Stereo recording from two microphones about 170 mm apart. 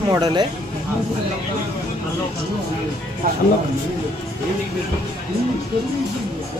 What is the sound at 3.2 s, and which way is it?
Speech, 55° right (ahead or behind).